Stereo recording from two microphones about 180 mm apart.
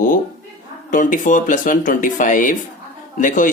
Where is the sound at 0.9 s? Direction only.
45° left (ahead or behind).